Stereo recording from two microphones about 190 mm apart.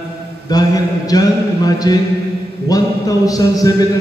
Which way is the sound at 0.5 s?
20° left (ahead or behind).